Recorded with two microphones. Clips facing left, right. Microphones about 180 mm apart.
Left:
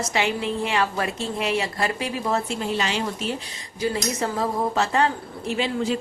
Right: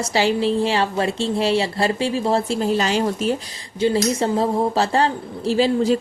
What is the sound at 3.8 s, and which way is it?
A woman's voice, 25° right (ahead or behind).